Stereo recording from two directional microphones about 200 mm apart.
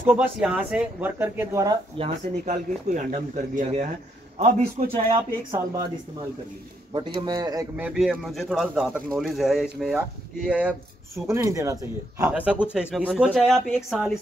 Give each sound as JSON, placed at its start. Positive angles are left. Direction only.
{"t": 0.0, "sound": "speech", "side_deg": -5}
{"t": 2.4, "sound": "speech", "side_deg": -40}
{"t": 7.2, "sound": "speech", "side_deg": -20}
{"t": 7.8, "sound": "speech", "side_deg": 0}